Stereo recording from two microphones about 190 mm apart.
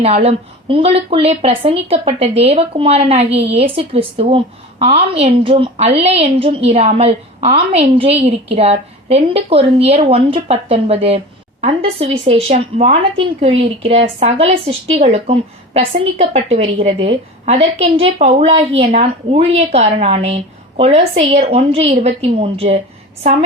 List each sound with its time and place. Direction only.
0.0 s a woman's voice: 30° right (ahead or behind)